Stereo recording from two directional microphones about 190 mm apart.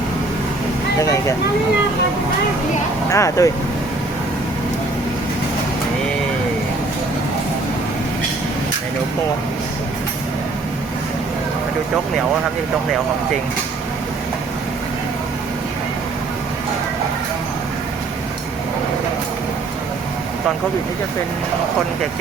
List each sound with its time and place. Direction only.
3.1 s speech: 15° left (ahead or behind)